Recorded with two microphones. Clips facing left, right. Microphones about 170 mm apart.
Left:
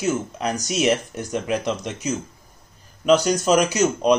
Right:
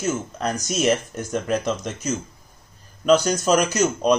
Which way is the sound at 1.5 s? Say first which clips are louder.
Right 1 dB; centre (ahead or behind).